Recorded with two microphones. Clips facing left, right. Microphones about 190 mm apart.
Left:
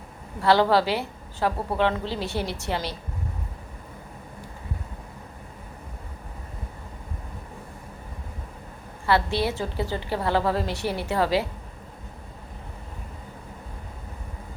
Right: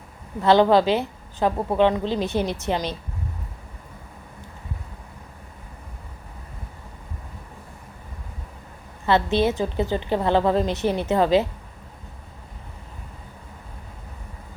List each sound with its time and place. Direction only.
0.4 s a woman's voice: 20° right (ahead or behind)
9.0 s a woman's voice: 20° right (ahead or behind)